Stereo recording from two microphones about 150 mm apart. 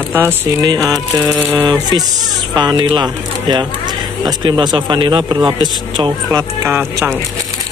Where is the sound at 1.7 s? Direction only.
25° right (ahead or behind).